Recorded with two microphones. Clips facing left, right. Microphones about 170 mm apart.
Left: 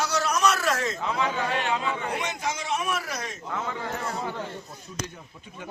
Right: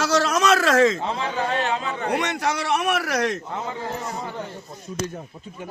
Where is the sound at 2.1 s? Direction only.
70° right (ahead or behind).